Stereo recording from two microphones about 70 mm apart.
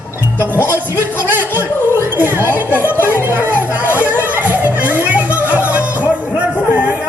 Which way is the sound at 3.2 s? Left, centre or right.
Right.